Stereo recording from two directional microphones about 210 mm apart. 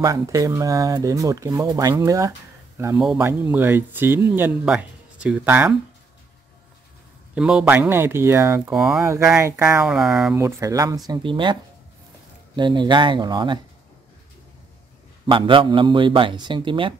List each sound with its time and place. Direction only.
0.0 s speech: 15° right (ahead or behind)
7.3 s speech: 5° right (ahead or behind)
9.0 s speech: 15° right (ahead or behind)
10.3 s a man's voice: 15° right (ahead or behind)
12.5 s a man's voice: 20° right (ahead or behind)
15.2 s a man's voice: 25° right (ahead or behind)